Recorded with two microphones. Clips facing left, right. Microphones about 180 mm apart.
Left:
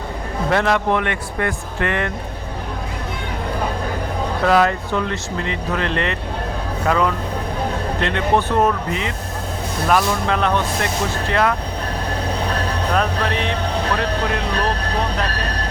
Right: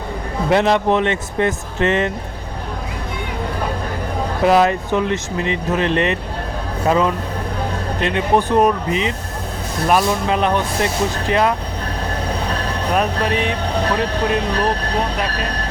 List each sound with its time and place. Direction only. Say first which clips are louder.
0.5 s speech: right 3 dB; 20° right (ahead or behind)
4.4 s speech: right 3 dB; 20° right (ahead or behind)
12.9 s speech: right 3 dB; 15° right (ahead or behind)